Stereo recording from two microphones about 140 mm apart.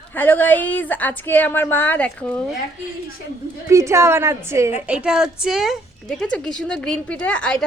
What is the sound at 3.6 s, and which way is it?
A woman's voice, 20° right (ahead or behind).